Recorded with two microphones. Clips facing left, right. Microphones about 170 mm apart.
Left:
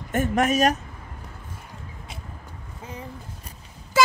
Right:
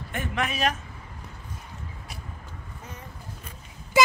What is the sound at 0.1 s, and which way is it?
Speech, 45° left (ahead or behind).